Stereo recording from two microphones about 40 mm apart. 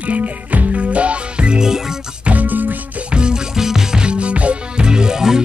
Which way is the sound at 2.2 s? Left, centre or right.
Right.